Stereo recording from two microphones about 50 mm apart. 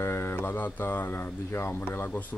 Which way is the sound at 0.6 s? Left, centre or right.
Left.